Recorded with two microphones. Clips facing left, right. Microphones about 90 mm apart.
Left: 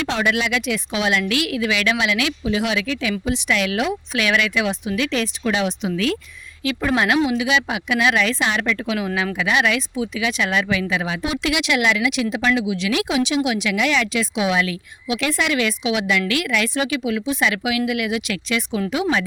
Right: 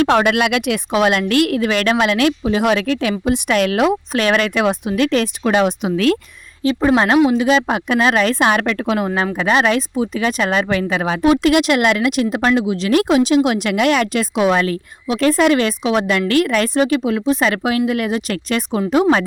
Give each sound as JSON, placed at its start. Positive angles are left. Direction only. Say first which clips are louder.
{"t": 0.0, "sound": "speech", "louder": "right 7 dB", "side_deg": -55}
{"t": 6.6, "sound": "speech", "louder": "right 6 dB", "side_deg": -35}